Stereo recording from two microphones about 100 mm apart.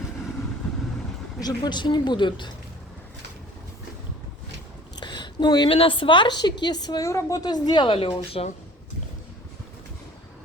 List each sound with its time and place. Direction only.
1.4 s a woman's voice: 40° left (ahead or behind)
4.9 s a sound: 50° left (ahead or behind)
5.6 s a woman's voice: 65° left (ahead or behind); by 7.1 s 45° left (ahead or behind)
7.1 s a woman's voice: 35° left (ahead or behind)
7.9 s a woman's voice: 70° left (ahead or behind)
8.4 s speech: 90° left